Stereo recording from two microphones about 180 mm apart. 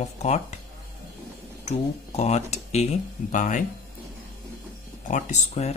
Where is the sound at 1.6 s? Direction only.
40° left (ahead or behind).